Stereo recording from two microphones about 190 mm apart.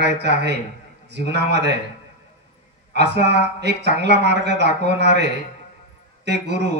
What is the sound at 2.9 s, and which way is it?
Speech, 65° right (ahead or behind).